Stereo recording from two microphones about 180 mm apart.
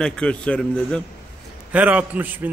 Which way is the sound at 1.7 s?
10° right (ahead or behind).